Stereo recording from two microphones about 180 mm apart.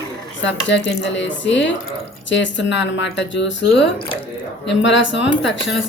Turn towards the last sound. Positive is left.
turn(degrees=80)